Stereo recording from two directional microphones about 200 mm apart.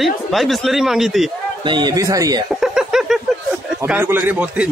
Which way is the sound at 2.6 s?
5° right (ahead or behind).